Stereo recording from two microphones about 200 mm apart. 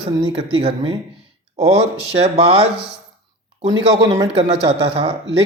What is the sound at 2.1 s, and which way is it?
Speech, 30° right (ahead or behind).